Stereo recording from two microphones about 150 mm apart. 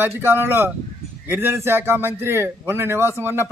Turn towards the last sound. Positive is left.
turn(degrees=-15)  # may be behind; listen again after turning